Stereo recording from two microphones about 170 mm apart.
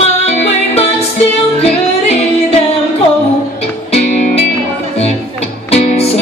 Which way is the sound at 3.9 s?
40° left (ahead or behind).